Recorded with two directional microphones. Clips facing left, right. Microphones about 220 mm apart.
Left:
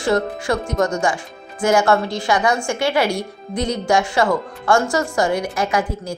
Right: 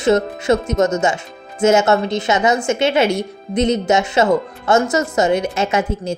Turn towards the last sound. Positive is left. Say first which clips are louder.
# right 3 dB
turn(degrees=-25)  # may be behind; listen again after turning